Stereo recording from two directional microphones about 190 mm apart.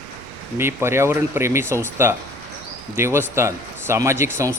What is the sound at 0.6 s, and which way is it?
Speech, 15° right (ahead or behind).